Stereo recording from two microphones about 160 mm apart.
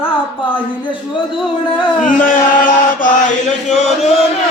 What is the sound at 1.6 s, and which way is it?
Chant, 30° left (ahead or behind).